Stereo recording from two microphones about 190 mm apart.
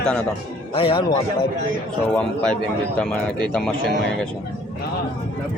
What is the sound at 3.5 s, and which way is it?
Speech, 5° left (ahead or behind).